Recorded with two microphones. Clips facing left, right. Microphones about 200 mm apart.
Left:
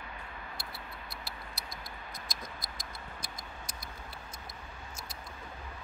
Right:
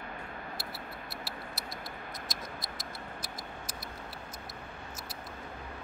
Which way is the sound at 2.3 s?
Centre (ahead or behind).